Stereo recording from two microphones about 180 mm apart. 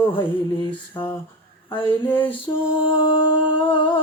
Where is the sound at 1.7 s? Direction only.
30° left (ahead or behind).